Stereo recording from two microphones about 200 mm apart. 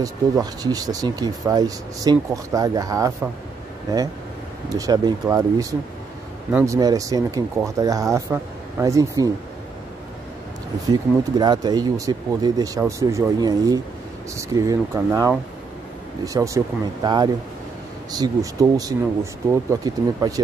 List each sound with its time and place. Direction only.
0.0 s speech: 20° right (ahead or behind)
4.7 s speech: 20° right (ahead or behind)
10.9 s speech: 20° right (ahead or behind)
16.3 s speech: 15° right (ahead or behind)